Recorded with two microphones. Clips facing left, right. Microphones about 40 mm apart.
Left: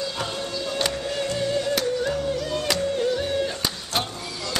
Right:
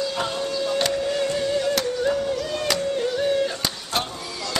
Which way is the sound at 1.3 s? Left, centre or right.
Centre.